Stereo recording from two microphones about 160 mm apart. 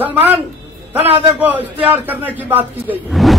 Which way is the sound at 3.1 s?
Centre (ahead or behind).